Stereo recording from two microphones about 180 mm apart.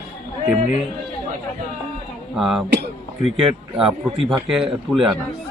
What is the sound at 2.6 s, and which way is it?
Speech, 65° right (ahead or behind).